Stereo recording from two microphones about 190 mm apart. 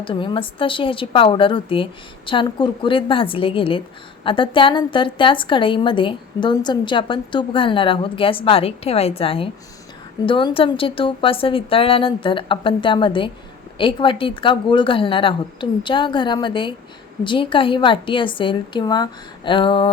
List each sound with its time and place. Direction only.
0.0 s a woman's voice: 25° left (ahead or behind)